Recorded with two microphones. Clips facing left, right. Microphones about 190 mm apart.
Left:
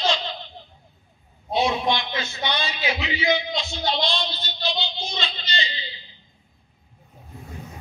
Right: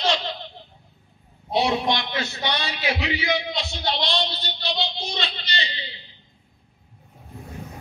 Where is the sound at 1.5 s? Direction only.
65° right (ahead or behind).